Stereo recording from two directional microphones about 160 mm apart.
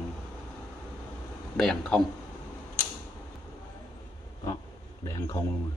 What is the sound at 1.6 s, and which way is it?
Speech, 5° left (ahead or behind).